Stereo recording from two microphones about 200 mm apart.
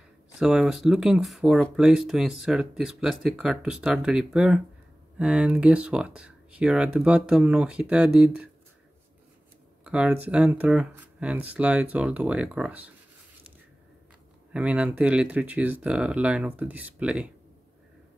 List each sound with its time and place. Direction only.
0.4 s speech: 5° right (ahead or behind)
9.8 s speech: 5° right (ahead or behind)
14.5 s speech: 5° right (ahead or behind)